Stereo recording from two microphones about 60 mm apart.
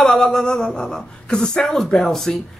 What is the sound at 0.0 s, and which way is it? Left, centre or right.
A woman's voice, centre.